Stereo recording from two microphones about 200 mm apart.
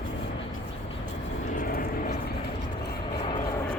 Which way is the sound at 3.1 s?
25° left (ahead or behind).